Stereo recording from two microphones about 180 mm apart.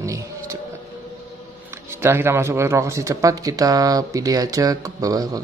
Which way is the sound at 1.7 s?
15° right (ahead or behind).